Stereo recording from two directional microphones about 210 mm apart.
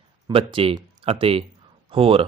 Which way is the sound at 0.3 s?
25° right (ahead or behind).